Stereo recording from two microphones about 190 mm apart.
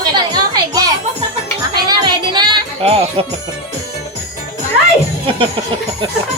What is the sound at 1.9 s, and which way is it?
Music, 20° right (ahead or behind).